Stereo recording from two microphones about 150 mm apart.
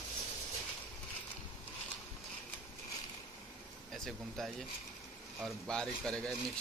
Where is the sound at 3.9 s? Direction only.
Centre (ahead or behind).